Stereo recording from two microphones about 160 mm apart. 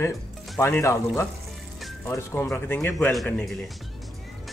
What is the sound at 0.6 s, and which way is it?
Speech, 15° left (ahead or behind).